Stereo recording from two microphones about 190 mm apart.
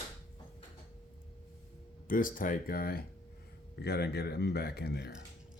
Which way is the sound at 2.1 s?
45° left (ahead or behind).